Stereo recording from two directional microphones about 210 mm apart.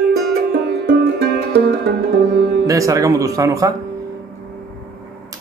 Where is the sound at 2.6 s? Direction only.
15° right (ahead or behind).